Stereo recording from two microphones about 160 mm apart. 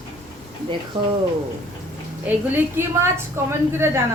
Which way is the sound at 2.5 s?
15° right (ahead or behind).